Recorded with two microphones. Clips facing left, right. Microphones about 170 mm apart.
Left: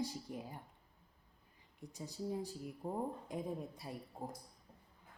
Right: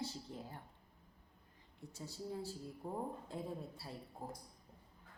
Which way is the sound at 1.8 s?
15° left (ahead or behind).